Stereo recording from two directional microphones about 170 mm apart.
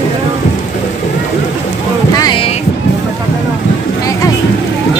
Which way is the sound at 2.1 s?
25° left (ahead or behind).